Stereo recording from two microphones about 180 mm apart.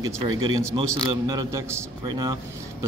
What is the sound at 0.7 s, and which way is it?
A man's voice, 25° right (ahead or behind).